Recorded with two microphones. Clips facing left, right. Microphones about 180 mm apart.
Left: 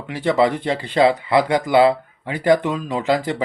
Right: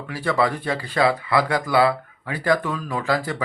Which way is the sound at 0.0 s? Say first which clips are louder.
Left 4 dB; 20° left (ahead or behind).